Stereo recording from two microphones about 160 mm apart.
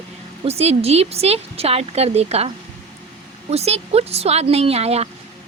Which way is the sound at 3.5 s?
40° right (ahead or behind).